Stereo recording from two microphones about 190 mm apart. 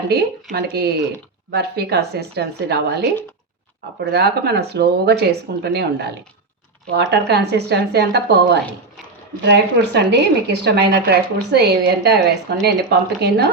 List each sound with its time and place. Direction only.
0.5 s a woman's voice: 60° right (ahead or behind)